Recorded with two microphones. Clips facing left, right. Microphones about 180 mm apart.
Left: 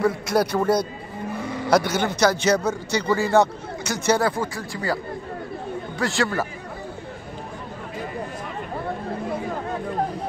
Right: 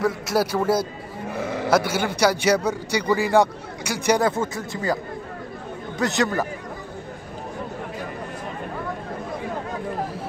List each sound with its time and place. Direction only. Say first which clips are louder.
0.0 s a man's voice: left 1 dB; 5° right (ahead or behind); by 4.9 s 20° right (ahead or behind)
5.9 s speech: right 2 dB; 20° right (ahead or behind)